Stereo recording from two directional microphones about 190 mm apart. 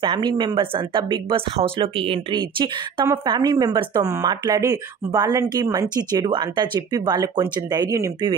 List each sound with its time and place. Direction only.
0.0 s speech: 25° right (ahead or behind)